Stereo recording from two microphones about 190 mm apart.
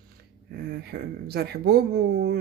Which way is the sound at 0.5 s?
55° right (ahead or behind).